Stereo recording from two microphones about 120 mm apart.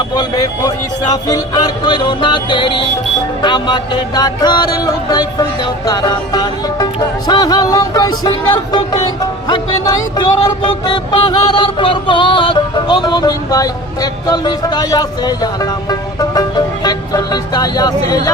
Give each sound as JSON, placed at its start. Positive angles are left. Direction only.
{"t": 0.1, "sound": "music", "side_deg": 35}